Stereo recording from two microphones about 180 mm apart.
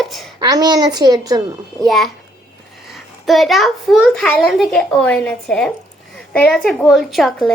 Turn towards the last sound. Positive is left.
turn(degrees=0)  # may be behind; listen again after turning